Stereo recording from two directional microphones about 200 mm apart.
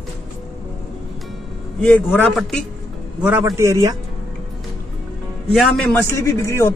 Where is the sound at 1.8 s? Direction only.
5° left (ahead or behind).